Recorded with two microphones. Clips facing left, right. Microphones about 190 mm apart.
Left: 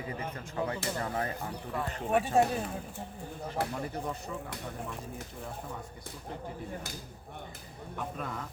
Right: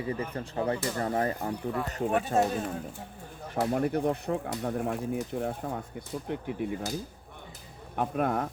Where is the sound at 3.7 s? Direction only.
60° right (ahead or behind).